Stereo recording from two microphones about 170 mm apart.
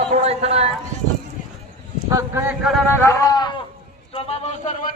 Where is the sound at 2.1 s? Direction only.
20° right (ahead or behind).